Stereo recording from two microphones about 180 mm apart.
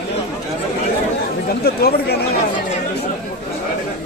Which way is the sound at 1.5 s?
60° left (ahead or behind).